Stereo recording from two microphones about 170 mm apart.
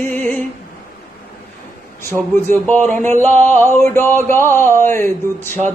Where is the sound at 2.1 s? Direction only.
10° left (ahead or behind).